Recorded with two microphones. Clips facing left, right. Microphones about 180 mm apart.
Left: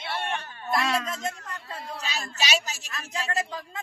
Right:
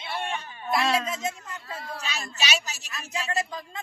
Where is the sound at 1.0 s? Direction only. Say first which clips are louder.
Right 1 dB; centre (ahead or behind).